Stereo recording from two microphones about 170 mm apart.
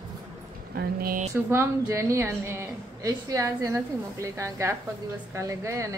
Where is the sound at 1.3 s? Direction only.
15° right (ahead or behind).